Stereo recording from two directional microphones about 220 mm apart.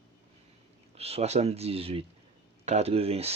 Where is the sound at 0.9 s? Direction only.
25° right (ahead or behind).